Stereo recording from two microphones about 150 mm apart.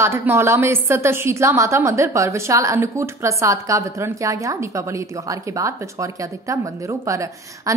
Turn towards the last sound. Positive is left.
turn(degrees=-20)  # may be behind; listen again after turning